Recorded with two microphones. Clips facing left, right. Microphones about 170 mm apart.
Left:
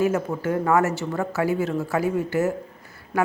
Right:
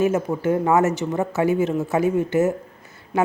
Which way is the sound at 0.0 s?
20° right (ahead or behind).